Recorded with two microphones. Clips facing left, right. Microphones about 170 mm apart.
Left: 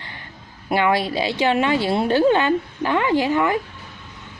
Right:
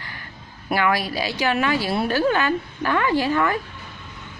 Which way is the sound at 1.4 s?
25° left (ahead or behind).